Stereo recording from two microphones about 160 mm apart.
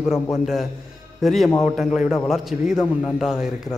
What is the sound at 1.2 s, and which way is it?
A man's voice, centre (ahead or behind).